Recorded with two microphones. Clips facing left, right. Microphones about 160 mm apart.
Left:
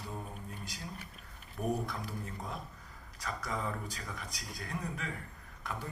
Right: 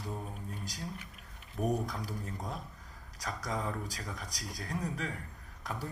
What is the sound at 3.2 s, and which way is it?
A woman's voice, 40° right (ahead or behind).